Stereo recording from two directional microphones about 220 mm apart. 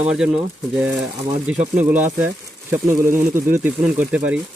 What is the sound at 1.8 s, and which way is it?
Speech, 10° right (ahead or behind).